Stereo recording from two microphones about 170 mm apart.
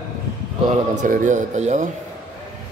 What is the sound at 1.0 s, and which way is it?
Speech, 50° right (ahead or behind).